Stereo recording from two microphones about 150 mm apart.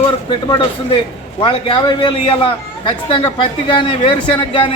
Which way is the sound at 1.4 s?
30° left (ahead or behind).